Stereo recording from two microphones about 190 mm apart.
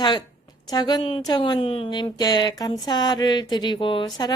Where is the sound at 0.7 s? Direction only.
20° left (ahead or behind).